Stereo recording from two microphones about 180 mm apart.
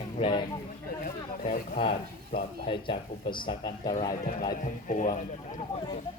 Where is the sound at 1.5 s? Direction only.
45° left (ahead or behind).